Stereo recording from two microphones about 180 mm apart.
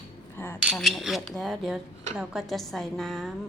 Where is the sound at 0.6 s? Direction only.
Centre (ahead or behind).